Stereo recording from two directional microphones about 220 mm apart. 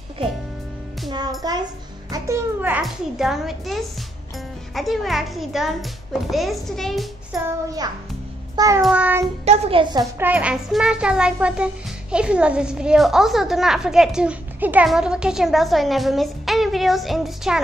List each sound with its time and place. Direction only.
1.4 s a child's voice: 15° right (ahead or behind); by 7.4 s centre (ahead or behind)
7.4 s a child's voice: 15° right (ahead or behind)
9.4 s a child's voice: 25° right (ahead or behind); by 17.6 s centre (ahead or behind)